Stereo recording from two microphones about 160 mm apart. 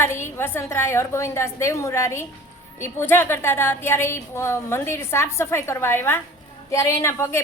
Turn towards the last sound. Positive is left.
turn(degrees=15)  # may be behind; listen again after turning